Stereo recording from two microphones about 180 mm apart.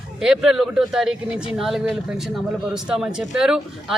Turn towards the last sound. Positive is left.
turn(degrees=-5)  # may be behind; listen again after turning